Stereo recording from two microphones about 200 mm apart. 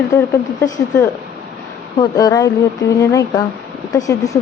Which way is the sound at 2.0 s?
20° left (ahead or behind).